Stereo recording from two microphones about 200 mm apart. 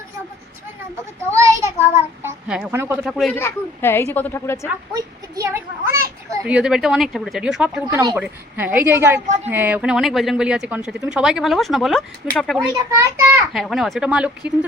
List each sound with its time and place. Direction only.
1.3 s child singing: 15° right (ahead or behind)
2.2 s a woman's voice: 5° right (ahead or behind)
3.3 s a woman's voice: 10° left (ahead or behind)
4.9 s a child's voice: 15° right (ahead or behind); by 12.6 s centre (ahead or behind)
12.7 s a woman's voice: 15° right (ahead or behind)
13.5 s a woman's voice: centre (ahead or behind)